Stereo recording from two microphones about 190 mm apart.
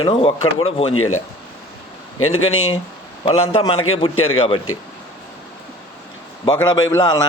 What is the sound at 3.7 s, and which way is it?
Speech, 90° left.